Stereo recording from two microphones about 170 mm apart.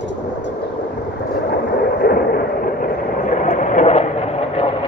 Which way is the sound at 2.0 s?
65° left (ahead or behind).